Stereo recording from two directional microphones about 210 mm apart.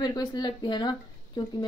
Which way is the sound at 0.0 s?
20° left (ahead or behind).